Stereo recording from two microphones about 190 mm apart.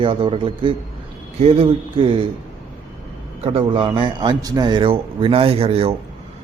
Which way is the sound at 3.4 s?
30° right (ahead or behind).